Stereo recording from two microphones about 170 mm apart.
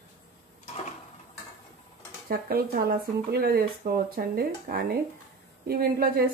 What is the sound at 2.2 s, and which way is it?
Speech, 60° right (ahead or behind).